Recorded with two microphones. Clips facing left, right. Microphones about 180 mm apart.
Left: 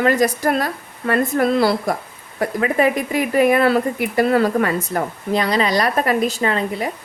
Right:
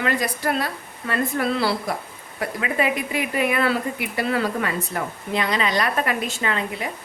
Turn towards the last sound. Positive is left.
turn(degrees=40)  # may be behind; listen again after turning